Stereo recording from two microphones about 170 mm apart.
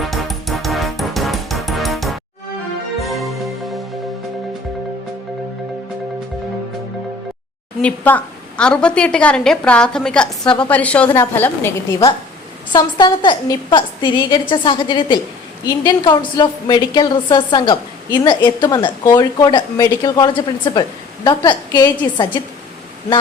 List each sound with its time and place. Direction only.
0.0 s music: centre (ahead or behind)
7.8 s a woman's voice: 10° left (ahead or behind)
12.7 s a woman's voice: 25° left (ahead or behind)